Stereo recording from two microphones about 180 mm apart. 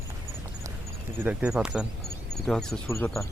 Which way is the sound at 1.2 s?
10° right (ahead or behind).